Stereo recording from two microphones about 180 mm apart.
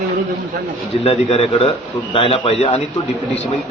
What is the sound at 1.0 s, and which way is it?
A man's voice, 35° left (ahead or behind).